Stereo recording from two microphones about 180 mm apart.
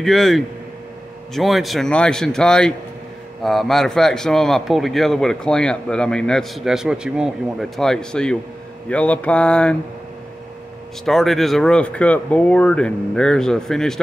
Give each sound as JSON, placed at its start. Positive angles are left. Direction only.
{"t": 0.0, "sound": "a man's voice", "side_deg": 0}
{"t": 11.1, "sound": "a man's voice", "side_deg": 0}